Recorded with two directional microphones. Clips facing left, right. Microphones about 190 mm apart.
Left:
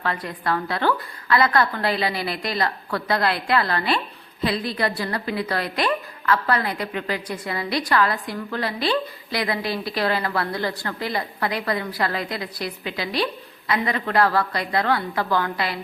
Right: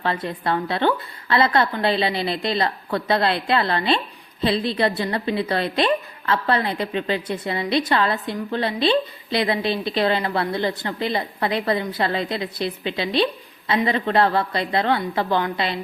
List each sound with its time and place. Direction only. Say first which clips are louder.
0.0 s a woman's voice: right 2 dB; 25° right (ahead or behind)